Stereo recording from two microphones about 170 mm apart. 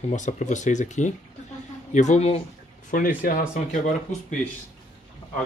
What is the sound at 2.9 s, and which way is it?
Speech, 55° left (ahead or behind).